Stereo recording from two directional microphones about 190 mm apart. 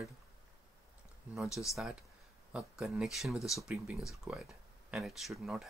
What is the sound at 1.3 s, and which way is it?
Speech, centre (ahead or behind).